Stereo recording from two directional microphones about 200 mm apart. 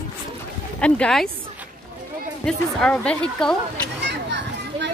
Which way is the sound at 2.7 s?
5° left (ahead or behind).